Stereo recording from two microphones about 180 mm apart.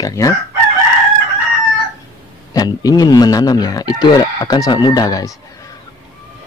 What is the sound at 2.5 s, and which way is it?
Speech, 20° left (ahead or behind).